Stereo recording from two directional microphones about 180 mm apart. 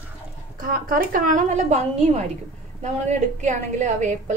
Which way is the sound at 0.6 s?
50° right (ahead or behind).